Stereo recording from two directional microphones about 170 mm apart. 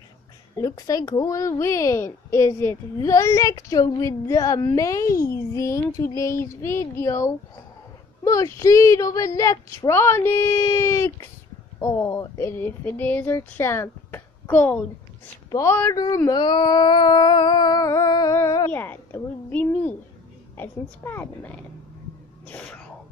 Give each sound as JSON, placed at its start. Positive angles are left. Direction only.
{"t": 0.6, "sound": "speech", "side_deg": 20}
{"t": 16.3, "sound": "speech", "side_deg": 25}